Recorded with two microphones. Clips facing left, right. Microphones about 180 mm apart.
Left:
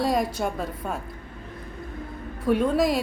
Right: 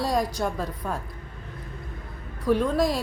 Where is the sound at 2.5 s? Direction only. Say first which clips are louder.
Left 1 dB; 5° left (ahead or behind).